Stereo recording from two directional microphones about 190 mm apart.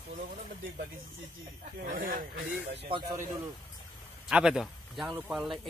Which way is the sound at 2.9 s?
20° right (ahead or behind).